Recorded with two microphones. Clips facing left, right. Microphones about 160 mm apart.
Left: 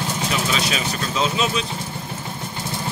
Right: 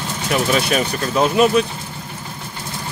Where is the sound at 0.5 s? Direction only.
55° right (ahead or behind).